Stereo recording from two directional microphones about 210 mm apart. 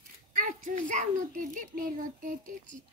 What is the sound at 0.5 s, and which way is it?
A child's voice, 35° right (ahead or behind).